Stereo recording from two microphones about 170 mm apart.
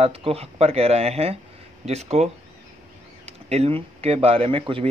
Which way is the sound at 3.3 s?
40° right (ahead or behind).